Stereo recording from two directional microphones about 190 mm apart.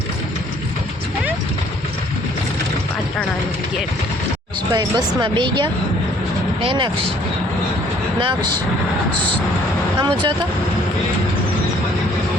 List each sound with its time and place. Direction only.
4.7 s speech: 25° right (ahead or behind)
8.2 s speech: 25° right (ahead or behind)
10.0 s speech: 25° right (ahead or behind)